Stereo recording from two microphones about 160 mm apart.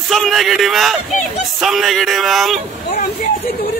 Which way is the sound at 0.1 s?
Centre (ahead or behind).